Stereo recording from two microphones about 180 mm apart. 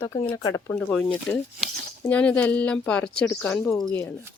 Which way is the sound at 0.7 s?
5° left (ahead or behind).